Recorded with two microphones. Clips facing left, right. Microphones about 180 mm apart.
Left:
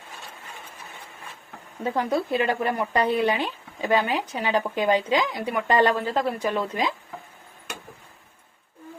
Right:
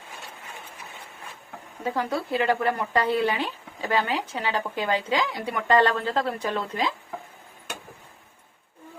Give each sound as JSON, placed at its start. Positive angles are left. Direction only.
{"t": 1.8, "sound": "a woman's voice", "side_deg": 20}